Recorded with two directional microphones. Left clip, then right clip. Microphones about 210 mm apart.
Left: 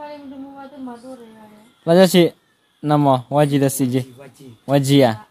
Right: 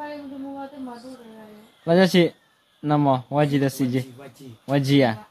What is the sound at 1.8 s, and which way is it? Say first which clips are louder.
A man's voice: left 5 dB; 35° left (ahead or behind).